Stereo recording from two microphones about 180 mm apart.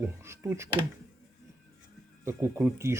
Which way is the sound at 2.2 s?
10° right (ahead or behind).